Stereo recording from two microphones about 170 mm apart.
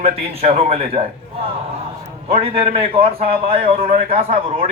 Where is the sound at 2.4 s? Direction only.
35° right (ahead or behind).